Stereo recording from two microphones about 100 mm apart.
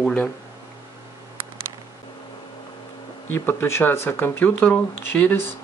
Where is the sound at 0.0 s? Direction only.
15° left (ahead or behind).